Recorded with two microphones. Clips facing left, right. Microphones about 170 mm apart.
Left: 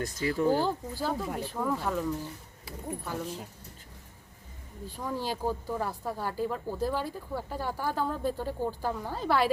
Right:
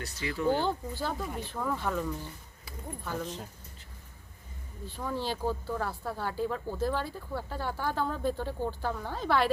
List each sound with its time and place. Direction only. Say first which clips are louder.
0.0 s speech: left 3 dB; 45° left (ahead or behind)
0.6 s speech: left 1 dB; 5° left (ahead or behind)
4.9 s speech: even; 10° left (ahead or behind)